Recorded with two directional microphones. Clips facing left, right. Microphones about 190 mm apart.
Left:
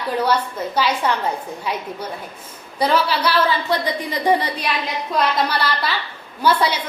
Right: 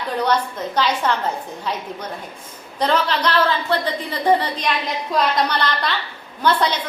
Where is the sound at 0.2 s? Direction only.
10° left (ahead or behind).